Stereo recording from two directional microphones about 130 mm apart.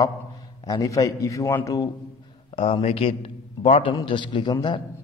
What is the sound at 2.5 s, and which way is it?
A man's voice, 45° left (ahead or behind).